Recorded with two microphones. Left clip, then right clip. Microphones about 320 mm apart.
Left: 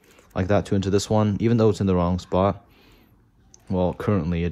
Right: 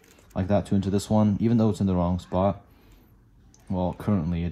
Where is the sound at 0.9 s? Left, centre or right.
Right.